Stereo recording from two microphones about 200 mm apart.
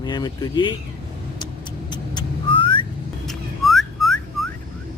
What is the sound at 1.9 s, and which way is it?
Vehicle, 20° left (ahead or behind).